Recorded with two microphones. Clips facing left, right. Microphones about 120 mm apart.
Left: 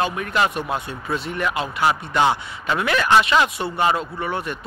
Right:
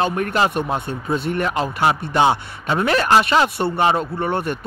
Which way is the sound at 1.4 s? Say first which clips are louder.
Even; 35° right (ahead or behind).